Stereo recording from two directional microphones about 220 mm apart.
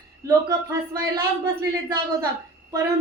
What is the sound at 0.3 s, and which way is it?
Speech, 15° right (ahead or behind).